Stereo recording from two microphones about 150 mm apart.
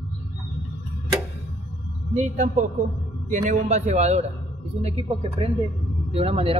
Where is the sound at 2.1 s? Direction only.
55° right (ahead or behind).